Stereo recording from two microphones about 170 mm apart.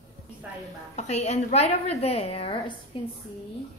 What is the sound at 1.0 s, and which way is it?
A woman's voice, 40° left (ahead or behind).